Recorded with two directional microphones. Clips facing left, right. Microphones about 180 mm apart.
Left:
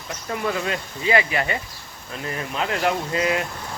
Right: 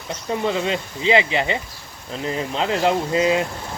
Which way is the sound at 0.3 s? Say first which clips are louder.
Right 3 dB; 20° right (ahead or behind).